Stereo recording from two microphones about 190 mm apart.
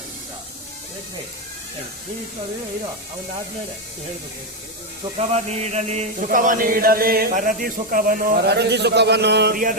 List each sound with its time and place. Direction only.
5.3 s chant: 35° right (ahead or behind)